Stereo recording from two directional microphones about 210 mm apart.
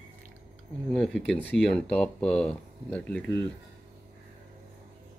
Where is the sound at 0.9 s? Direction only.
Centre (ahead or behind).